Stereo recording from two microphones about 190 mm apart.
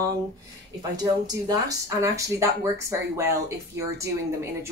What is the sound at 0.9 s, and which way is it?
Speech, 20° right (ahead or behind).